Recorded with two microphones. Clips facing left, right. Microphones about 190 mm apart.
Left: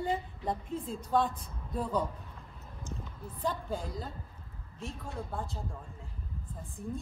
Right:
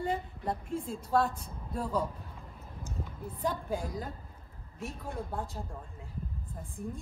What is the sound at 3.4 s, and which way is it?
Speech, 10° right (ahead or behind).